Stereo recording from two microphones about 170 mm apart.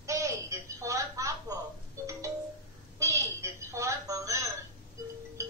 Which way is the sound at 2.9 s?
15° right (ahead or behind).